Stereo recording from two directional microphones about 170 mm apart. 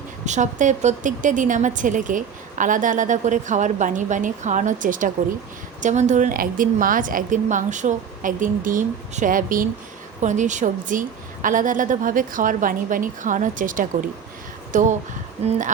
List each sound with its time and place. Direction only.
0.3 s a woman's voice: 45° right (ahead or behind)